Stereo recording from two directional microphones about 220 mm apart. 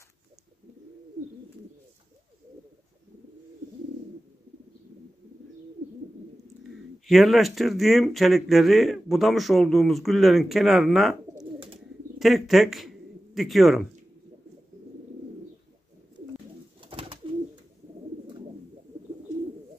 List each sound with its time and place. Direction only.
7.1 s speech: centre (ahead or behind)
11.3 s bird: 25° right (ahead or behind)
12.2 s a man's voice: centre (ahead or behind)
16.8 s bird: 25° right (ahead or behind)